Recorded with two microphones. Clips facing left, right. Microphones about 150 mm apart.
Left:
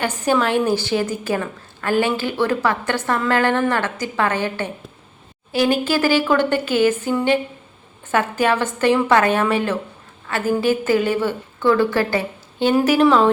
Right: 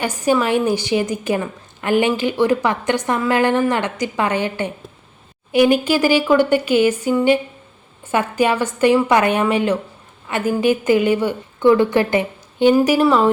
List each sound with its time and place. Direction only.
0.0 s a woman's voice: 10° right (ahead or behind)